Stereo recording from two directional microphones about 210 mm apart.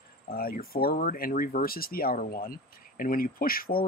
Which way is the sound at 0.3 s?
45° left (ahead or behind).